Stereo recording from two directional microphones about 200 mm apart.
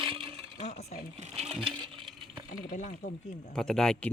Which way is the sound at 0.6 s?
35° left (ahead or behind).